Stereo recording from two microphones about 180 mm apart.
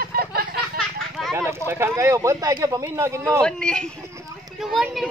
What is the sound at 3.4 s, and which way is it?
Speech, 5° left (ahead or behind).